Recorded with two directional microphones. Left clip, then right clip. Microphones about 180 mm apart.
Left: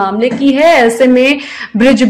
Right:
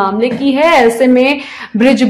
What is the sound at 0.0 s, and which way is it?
A woman's voice, 10° left (ahead or behind).